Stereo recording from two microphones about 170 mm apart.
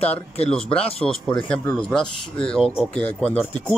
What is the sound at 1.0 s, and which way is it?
Speech, 5° left (ahead or behind).